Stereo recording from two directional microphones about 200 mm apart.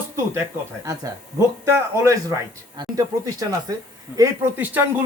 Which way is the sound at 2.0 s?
15° right (ahead or behind).